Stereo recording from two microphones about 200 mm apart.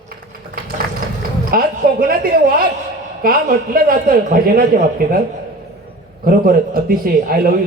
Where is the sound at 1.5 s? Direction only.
45° right (ahead or behind).